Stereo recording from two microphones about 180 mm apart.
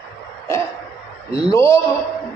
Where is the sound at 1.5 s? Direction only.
15° left (ahead or behind).